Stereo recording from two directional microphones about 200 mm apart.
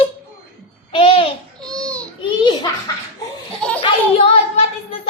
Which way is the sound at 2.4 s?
20° left (ahead or behind).